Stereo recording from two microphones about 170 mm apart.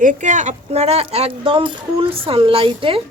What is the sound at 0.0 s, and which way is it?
Speech, 50° right (ahead or behind).